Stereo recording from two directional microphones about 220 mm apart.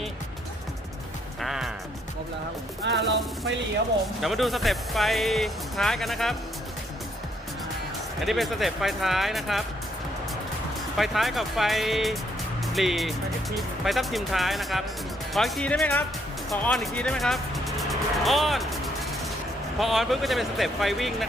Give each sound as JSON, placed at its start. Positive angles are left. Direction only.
{"t": 1.4, "sound": "music", "side_deg": 0}
{"t": 2.8, "sound": "speech", "side_deg": -50}
{"t": 4.2, "sound": "speech", "side_deg": 0}
{"t": 8.2, "sound": "speech", "side_deg": 0}
{"t": 10.9, "sound": "speech", "side_deg": 0}
{"t": 19.8, "sound": "speech", "side_deg": 0}